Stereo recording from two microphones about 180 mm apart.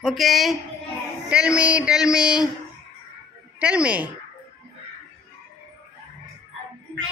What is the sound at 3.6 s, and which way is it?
Speech, 5° right (ahead or behind).